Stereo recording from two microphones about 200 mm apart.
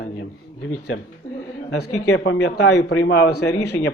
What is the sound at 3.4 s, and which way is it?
Speech, 15° left (ahead or behind).